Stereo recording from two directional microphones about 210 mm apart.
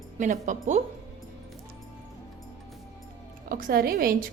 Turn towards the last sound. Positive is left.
turn(degrees=-45)  # may be behind; listen again after turning